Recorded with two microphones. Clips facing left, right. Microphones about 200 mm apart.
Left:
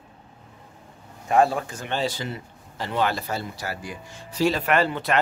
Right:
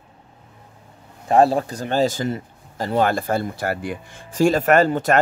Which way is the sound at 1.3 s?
35° right (ahead or behind).